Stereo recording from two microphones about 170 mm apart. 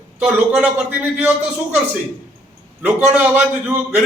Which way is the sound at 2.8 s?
10° right (ahead or behind).